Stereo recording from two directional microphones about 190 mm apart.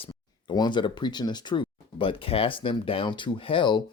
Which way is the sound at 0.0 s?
25° left (ahead or behind).